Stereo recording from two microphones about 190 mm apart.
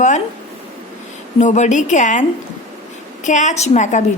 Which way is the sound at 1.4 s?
40° left (ahead or behind).